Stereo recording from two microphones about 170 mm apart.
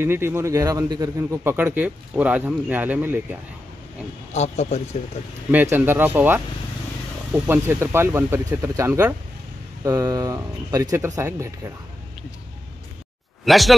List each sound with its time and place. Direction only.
0.0 s speech: 15° right (ahead or behind)
4.3 s speech: 40° left (ahead or behind)
5.5 s speech: 10° right (ahead or behind)
13.5 s speech: centre (ahead or behind)